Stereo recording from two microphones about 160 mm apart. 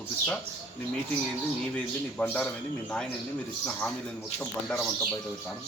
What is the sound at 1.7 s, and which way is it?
Speech, 10° left (ahead or behind).